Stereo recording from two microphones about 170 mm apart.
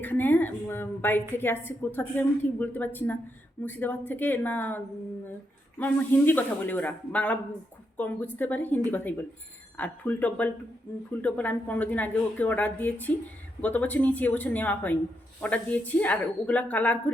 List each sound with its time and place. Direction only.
0.0 s a woman's voice: 10° left (ahead or behind)
5.8 s a woman's voice: 10° left (ahead or behind)